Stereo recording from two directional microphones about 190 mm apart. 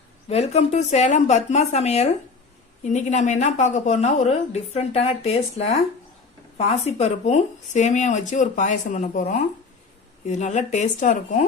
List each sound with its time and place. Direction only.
0.3 s a woman's voice: 35° left (ahead or behind)